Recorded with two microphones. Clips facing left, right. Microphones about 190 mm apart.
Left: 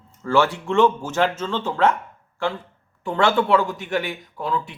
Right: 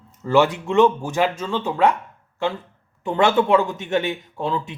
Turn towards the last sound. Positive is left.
turn(degrees=-25)  # may be behind; listen again after turning